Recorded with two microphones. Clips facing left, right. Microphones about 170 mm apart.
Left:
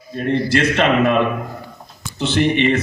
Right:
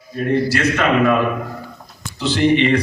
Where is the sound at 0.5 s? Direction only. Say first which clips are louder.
Left 1 dB; 25° left (ahead or behind).